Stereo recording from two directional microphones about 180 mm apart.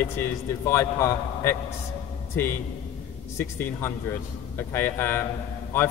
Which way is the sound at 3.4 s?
15° left (ahead or behind).